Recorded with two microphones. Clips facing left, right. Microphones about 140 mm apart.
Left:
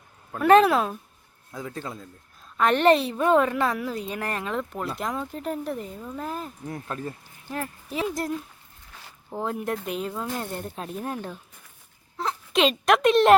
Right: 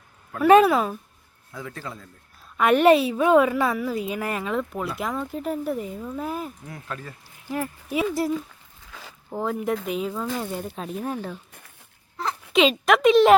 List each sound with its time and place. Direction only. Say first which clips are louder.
0.3 s a woman's voice: right 2 dB; 5° right (ahead or behind)
1.5 s speech: left 1 dB; 25° left (ahead or behind)
2.6 s a woman's voice: right 3 dB; 10° right (ahead or behind)
6.7 s speech: left 4 dB; 30° left (ahead or behind)
7.5 s speech: right 4 dB; 10° right (ahead or behind)
8.9 s zipper: right 5 dB; 90° right
9.3 s a woman's voice: right 3 dB; centre (ahead or behind)
12.5 s a woman's voice: right 2 dB; centre (ahead or behind)